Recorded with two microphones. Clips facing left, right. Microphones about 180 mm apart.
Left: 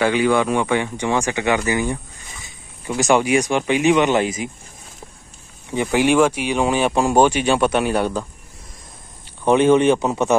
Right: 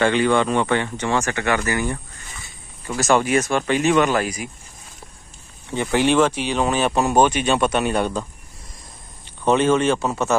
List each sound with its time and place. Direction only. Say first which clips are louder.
0.0 s speech: left 1 dB; 10° left (ahead or behind)
3.0 s speech: left 2 dB; 15° left (ahead or behind)
5.7 s speech: left 2 dB; 15° left (ahead or behind)
9.4 s speech: left 3 dB; 15° left (ahead or behind)